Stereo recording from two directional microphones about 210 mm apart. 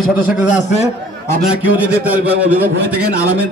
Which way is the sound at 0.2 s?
35° left (ahead or behind).